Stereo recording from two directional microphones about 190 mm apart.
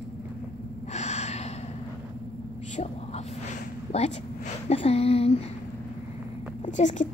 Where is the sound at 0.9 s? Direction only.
35° left (ahead or behind).